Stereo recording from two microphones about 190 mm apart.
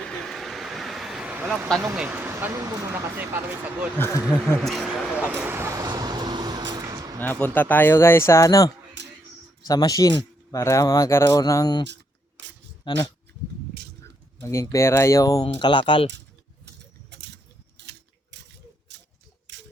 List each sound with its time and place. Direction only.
0.0 s vehicle: centre (ahead or behind)
1.8 s speech: 10° right (ahead or behind)
3.9 s speech: 10° left (ahead or behind)
4.4 s vehicle: 5° left (ahead or behind); by 7.2 s 20° right (ahead or behind)
7.2 s speech: 10° left (ahead or behind)
9.0 s a sound: 65° right (ahead or behind)
9.6 s speech: 20° left (ahead or behind)
14.4 s speech: 15° left (ahead or behind)
17.1 s a sound: 65° right (ahead or behind)